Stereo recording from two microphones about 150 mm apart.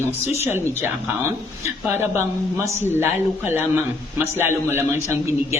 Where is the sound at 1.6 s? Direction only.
15° right (ahead or behind).